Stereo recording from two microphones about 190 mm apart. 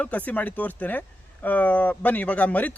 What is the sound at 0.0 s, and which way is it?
A man's voice, 5° left (ahead or behind).